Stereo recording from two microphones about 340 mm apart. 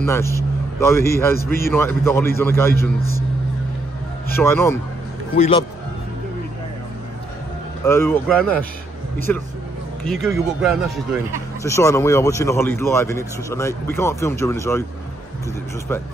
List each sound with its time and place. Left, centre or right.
0.0 s a man's voice: centre
4.4 s speech: centre
7.8 s speech: centre
10.0 s a man's voice: centre
15.9 s a man's voice: centre